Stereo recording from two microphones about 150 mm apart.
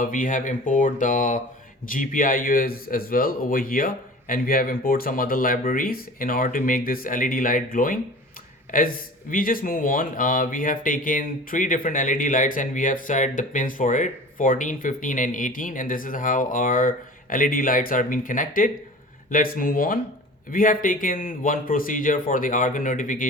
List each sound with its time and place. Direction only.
0.0 s a man's voice: 60° left (ahead or behind)